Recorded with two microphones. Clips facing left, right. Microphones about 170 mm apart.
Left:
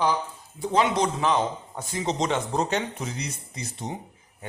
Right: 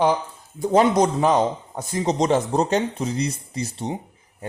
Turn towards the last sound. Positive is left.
turn(degrees=-30)  # may be behind; listen again after turning